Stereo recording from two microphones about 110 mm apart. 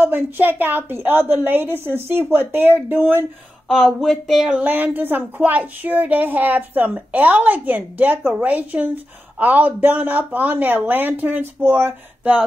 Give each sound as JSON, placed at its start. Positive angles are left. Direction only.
{"t": 0.0, "sound": "a woman's voice", "side_deg": -15}
{"t": 3.6, "sound": "speech", "side_deg": 0}
{"t": 4.6, "sound": "speech", "side_deg": -15}